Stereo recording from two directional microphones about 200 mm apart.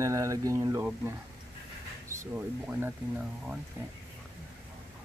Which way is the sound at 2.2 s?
10° right (ahead or behind).